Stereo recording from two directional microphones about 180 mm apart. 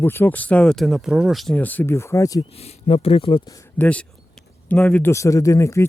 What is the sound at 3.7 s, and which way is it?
Speech, 10° left (ahead or behind).